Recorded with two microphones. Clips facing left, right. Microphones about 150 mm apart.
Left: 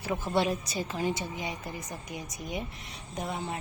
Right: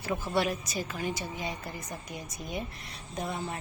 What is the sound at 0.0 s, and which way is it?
Speech, 15° left (ahead or behind).